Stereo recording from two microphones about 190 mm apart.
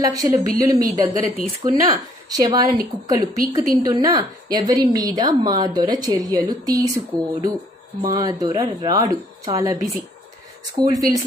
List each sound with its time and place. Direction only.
0.0 s a woman's voice: 20° right (ahead or behind)